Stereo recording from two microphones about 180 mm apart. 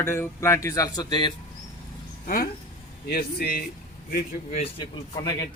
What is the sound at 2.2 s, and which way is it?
Speech, 50° left (ahead or behind).